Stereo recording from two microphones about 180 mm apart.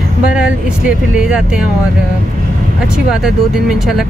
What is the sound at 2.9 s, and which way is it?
Speech, 5° right (ahead or behind).